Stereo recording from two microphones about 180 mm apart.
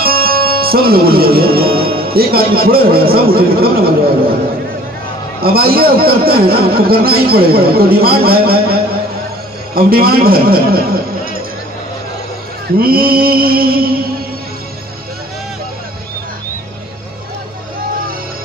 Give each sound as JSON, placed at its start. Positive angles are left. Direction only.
{"t": 0.0, "sound": "music", "side_deg": -55}
{"t": 5.4, "sound": "a man's voice", "side_deg": -55}
{"t": 12.7, "sound": "a man's voice", "side_deg": -55}